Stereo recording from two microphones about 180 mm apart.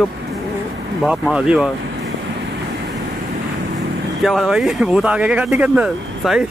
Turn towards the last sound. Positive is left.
turn(degrees=-5)  # may be behind; listen again after turning